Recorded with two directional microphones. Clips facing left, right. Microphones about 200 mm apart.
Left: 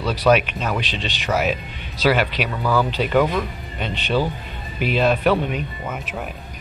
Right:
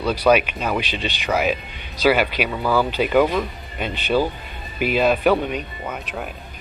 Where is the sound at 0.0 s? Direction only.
Centre (ahead or behind).